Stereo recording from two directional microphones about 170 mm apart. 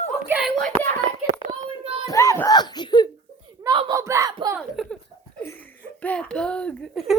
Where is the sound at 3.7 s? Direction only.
25° right (ahead or behind).